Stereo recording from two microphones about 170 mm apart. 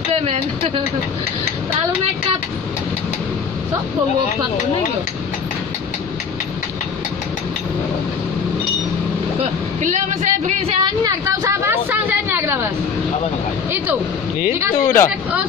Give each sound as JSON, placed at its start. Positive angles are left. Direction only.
{"t": 0.1, "sound": "speech", "side_deg": -35}
{"t": 9.4, "sound": "a man's voice", "side_deg": -45}
{"t": 10.8, "sound": "a sound", "side_deg": -20}
{"t": 14.8, "sound": "speech", "side_deg": 15}